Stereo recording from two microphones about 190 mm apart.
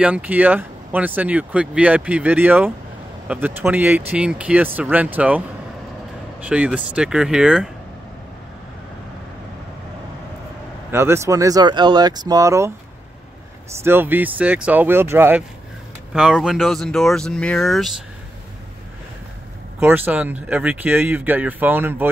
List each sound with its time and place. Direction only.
0.0 s speech: 10° right (ahead or behind)
6.4 s speech: 5° right (ahead or behind)
10.9 s speech: 15° right (ahead or behind)
13.8 s speech: 10° right (ahead or behind)
19.8 s speech: 10° right (ahead or behind)